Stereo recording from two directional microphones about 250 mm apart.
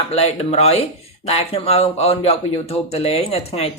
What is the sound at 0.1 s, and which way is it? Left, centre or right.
Speech, left.